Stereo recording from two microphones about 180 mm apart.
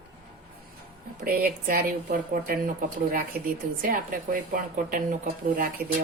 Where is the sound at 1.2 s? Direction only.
55° right (ahead or behind).